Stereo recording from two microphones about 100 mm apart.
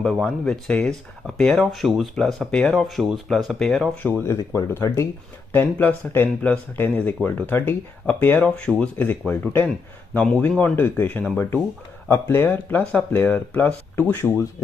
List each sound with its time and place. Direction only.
0.0 s speech: 5° left (ahead or behind)
4.0 s speech: 25° left (ahead or behind)